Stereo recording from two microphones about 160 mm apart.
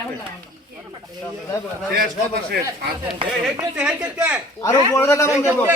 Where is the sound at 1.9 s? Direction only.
75° right (ahead or behind).